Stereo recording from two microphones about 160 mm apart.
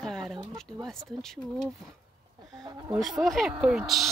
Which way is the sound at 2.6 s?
25° right (ahead or behind).